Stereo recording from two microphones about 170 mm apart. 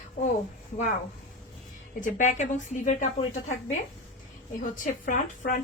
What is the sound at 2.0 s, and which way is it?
A woman's voice, 50° left (ahead or behind).